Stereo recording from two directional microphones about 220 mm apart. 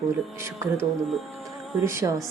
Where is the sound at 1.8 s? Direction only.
10° right (ahead or behind).